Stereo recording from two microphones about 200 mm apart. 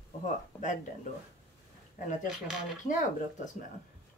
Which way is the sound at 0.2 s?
40° left (ahead or behind).